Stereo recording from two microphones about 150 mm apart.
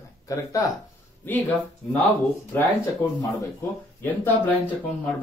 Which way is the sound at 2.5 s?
15° left (ahead or behind).